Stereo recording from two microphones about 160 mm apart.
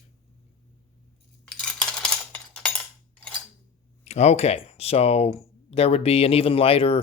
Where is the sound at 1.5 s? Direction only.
5° left (ahead or behind).